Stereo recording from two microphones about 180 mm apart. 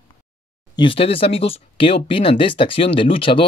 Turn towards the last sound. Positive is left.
turn(degrees=30)  # may be behind; listen again after turning